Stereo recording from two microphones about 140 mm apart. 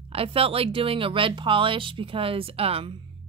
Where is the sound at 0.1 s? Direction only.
40° right (ahead or behind).